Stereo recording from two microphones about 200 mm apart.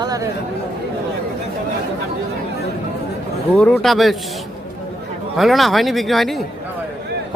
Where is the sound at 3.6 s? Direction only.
5° left (ahead or behind).